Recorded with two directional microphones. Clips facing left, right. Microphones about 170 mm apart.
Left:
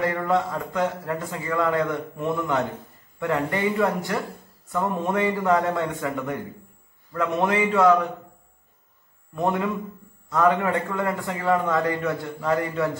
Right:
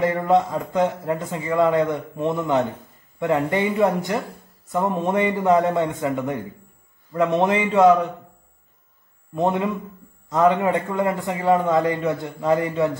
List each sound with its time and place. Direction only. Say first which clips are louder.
0.0 s speech: right 4 dB; 20° right (ahead or behind)
9.3 s speech: right 3 dB; 20° right (ahead or behind)